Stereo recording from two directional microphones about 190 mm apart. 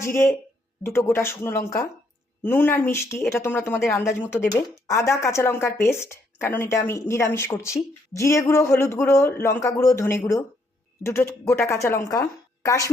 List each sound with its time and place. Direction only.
0.0 s speech: 15° left (ahead or behind)